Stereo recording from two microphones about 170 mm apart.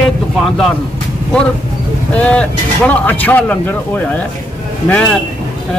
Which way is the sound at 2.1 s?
10° left (ahead or behind).